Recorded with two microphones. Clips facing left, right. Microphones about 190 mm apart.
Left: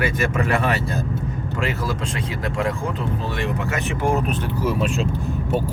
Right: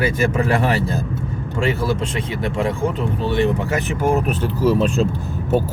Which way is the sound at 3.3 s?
30° right (ahead or behind).